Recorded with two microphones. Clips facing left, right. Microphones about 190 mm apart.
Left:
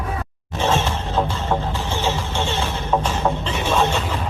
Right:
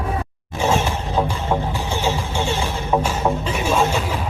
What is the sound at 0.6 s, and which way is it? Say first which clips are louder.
Music: right 1 dB; 10° right (ahead or behind).